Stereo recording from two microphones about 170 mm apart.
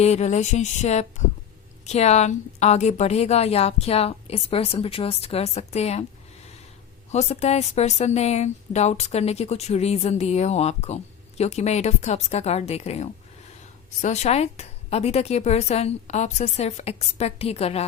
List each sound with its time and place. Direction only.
0.0 s a woman's voice: 40° left (ahead or behind)
7.1 s a woman's voice: 40° left (ahead or behind)